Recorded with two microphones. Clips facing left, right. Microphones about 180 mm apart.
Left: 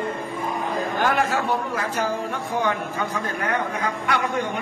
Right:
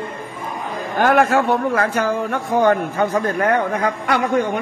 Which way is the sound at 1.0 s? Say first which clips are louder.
Right 9 dB; 60° right (ahead or behind).